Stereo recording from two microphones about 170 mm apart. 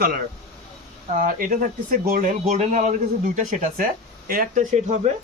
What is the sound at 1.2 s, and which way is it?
Speech, 55° right (ahead or behind).